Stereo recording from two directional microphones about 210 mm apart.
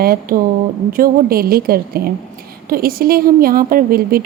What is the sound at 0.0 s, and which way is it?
A woman's voice, 45° right (ahead or behind).